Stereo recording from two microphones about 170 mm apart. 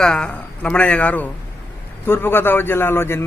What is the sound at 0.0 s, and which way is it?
A man's voice, 5° left (ahead or behind).